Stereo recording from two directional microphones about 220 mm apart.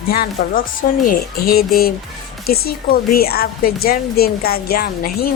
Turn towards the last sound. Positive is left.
turn(degrees=45)  # may be behind; listen again after turning